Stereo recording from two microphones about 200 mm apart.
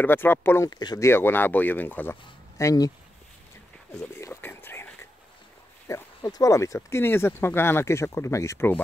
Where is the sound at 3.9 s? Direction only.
10° left (ahead or behind).